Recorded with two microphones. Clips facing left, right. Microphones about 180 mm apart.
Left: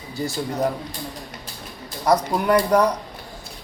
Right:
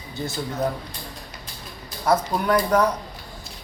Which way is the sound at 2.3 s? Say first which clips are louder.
Left 3 dB; 10° left (ahead or behind).